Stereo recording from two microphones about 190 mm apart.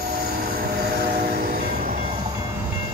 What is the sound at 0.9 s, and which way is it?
Train, 55° right (ahead or behind).